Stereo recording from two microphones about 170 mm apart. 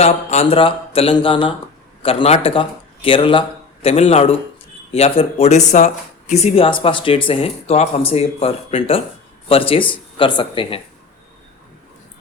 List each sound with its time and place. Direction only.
0.0 s speech: 40° left (ahead or behind)